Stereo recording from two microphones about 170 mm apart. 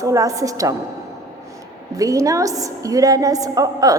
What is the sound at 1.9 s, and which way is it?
A woman's voice, 20° right (ahead or behind).